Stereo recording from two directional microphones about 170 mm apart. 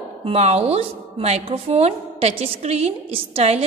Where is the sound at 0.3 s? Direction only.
40° right (ahead or behind).